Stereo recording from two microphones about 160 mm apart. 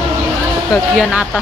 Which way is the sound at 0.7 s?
5° right (ahead or behind).